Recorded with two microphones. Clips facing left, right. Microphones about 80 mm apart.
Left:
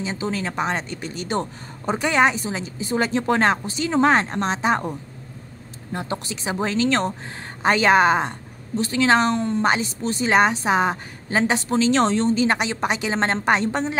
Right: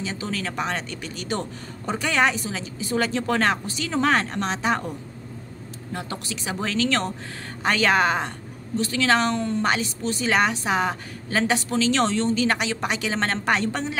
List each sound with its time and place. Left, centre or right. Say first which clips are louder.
0.0 s a woman's voice: left 3 dB; left
5.9 s a woman's voice: left 4 dB; left